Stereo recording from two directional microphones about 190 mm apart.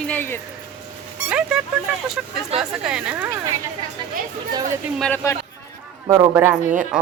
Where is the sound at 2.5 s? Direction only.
30° right (ahead or behind).